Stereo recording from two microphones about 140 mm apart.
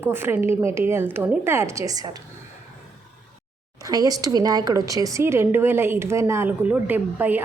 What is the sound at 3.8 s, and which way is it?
A woman's voice, 25° right (ahead or behind).